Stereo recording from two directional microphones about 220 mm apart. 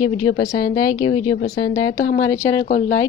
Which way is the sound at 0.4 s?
15° left (ahead or behind).